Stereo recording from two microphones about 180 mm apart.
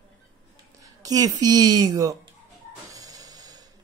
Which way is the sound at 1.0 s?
20° right (ahead or behind).